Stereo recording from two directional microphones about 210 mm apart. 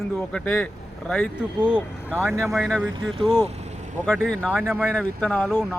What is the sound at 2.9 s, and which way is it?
Speech, 25° right (ahead or behind).